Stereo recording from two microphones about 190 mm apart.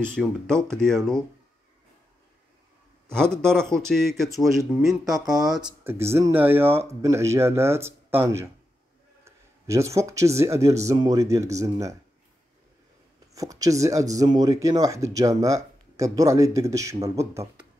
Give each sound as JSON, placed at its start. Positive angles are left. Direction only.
{"t": 0.0, "sound": "speech", "side_deg": 5}
{"t": 3.1, "sound": "speech", "side_deg": 5}
{"t": 5.9, "sound": "speech", "side_deg": -15}
{"t": 13.3, "sound": "speech", "side_deg": -20}